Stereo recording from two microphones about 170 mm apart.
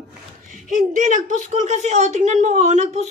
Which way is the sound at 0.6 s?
50° right (ahead or behind).